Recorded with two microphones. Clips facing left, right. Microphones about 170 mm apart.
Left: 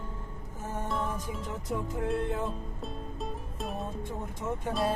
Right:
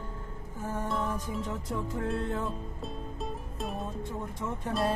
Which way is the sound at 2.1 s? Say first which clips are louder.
Left 3 dB; centre (ahead or behind).